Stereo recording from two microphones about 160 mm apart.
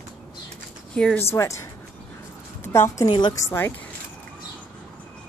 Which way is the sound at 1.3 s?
20° left (ahead or behind).